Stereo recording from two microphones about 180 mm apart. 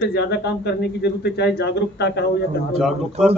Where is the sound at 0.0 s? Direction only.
65° left (ahead or behind).